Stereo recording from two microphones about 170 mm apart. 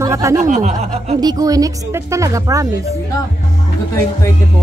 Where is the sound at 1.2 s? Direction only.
20° right (ahead or behind).